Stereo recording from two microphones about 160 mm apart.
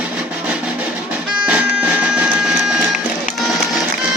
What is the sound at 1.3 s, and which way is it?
Music, 5° right (ahead or behind).